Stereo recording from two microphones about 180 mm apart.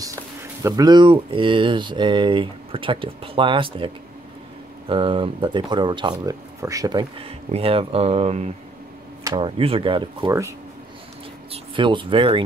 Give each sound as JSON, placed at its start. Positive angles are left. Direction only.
{"t": 0.7, "sound": "speech", "side_deg": -20}
{"t": 11.5, "sound": "speech", "side_deg": -30}